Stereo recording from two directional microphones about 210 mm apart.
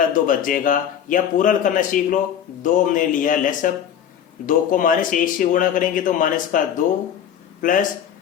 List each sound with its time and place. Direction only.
0.1 s speech: 40° left (ahead or behind)
7.6 s speech: 40° left (ahead or behind)